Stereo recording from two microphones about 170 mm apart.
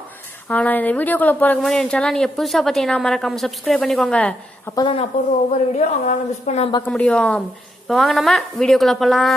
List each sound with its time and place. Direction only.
0.5 s a woman's voice: 10° left (ahead or behind)
4.7 s a woman's voice: 30° left (ahead or behind)
5.8 s a woman's voice: 40° left (ahead or behind)
6.9 s a woman's voice: 5° left (ahead or behind)